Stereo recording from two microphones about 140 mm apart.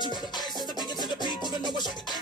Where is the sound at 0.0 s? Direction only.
30° left (ahead or behind).